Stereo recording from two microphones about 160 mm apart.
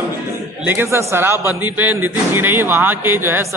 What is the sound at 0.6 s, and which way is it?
Speech, 15° right (ahead or behind).